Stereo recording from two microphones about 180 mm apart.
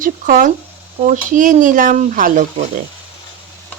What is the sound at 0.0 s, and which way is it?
Speech, 50° right (ahead or behind).